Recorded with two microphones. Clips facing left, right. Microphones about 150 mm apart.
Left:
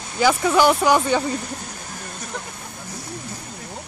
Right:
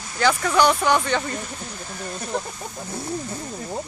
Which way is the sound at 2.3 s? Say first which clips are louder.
Right 7 dB; 30° right (ahead or behind).